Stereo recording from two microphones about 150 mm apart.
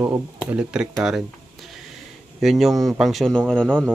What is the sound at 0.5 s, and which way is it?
Speech, 10° right (ahead or behind).